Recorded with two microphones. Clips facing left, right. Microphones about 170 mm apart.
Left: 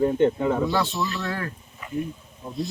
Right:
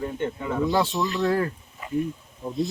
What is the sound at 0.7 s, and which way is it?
Speech, 15° right (ahead or behind).